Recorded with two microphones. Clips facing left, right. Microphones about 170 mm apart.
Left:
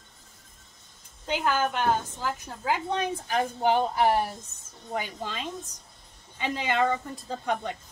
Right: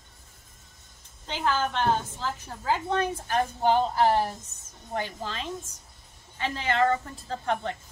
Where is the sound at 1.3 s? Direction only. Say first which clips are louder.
Left 1 dB; 10° left (ahead or behind).